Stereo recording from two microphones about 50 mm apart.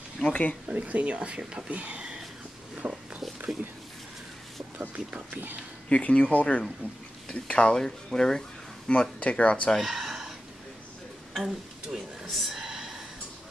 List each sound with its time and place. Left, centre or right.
0.3 s speech: left
0.7 s speech: right
2.8 s a sound: right
4.7 s speech: right
5.3 s speech: right
5.9 s speech: left
6.8 s speech: left
7.2 s speech: left
8.9 s speech: left
9.8 s a sound: centre
11.3 s speech: centre
12.4 s horse: centre